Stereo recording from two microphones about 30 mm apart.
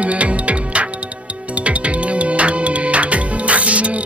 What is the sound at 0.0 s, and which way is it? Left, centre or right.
Music, right.